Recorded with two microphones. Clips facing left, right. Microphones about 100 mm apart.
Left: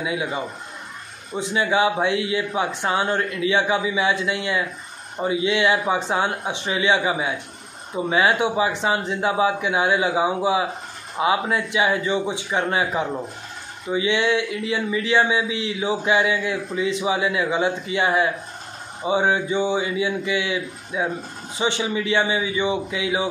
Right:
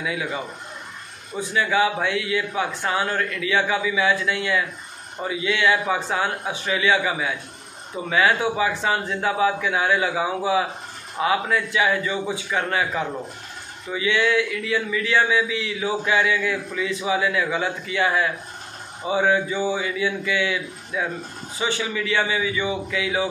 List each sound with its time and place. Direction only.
0.0 s speech: 25° left (ahead or behind)